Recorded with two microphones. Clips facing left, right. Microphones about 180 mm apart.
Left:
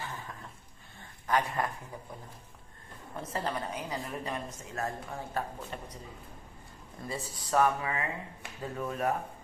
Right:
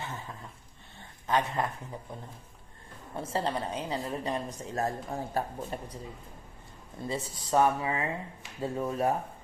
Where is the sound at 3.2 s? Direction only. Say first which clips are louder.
Right 3 dB; 30° right (ahead or behind).